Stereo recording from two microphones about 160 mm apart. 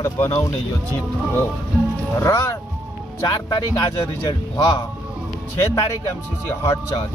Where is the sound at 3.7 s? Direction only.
25° left (ahead or behind).